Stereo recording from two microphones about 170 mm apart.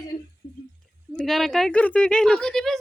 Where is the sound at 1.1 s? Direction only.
Centre (ahead or behind).